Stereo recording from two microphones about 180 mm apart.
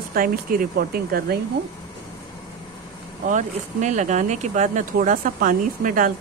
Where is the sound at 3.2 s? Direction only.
45° right (ahead or behind).